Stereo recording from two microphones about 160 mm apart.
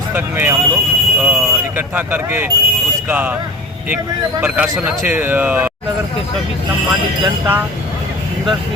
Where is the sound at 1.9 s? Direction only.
10° right (ahead or behind).